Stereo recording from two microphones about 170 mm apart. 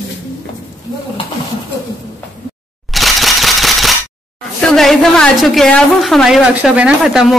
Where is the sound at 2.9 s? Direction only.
Centre (ahead or behind).